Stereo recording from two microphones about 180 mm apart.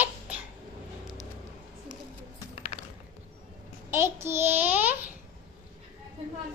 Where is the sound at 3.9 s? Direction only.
15° right (ahead or behind).